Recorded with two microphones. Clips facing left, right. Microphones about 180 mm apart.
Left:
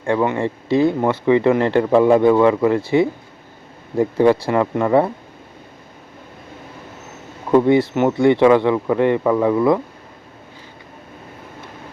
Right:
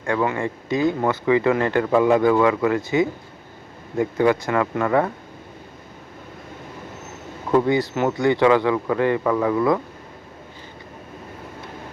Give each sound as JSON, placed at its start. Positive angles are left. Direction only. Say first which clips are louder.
{"t": 0.0, "sound": "speech", "louder": "left 4 dB", "side_deg": 25}
{"t": 7.5, "sound": "speech", "louder": "left 5 dB", "side_deg": 25}